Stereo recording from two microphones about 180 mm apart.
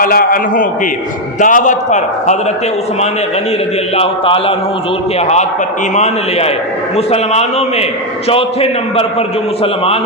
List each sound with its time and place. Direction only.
0.0 s a man's voice: 55° left (ahead or behind)
3.9 s a man's voice: 30° left (ahead or behind)
5.9 s a man's voice: 40° left (ahead or behind)